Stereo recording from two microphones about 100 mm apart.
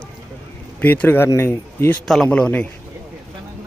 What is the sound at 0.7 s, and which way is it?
Speech, 20° left (ahead or behind).